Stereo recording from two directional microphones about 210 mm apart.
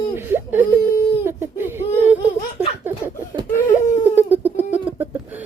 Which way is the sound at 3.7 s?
10° right (ahead or behind).